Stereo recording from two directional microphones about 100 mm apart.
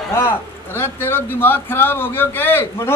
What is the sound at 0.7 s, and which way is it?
A man's voice, 25° left (ahead or behind).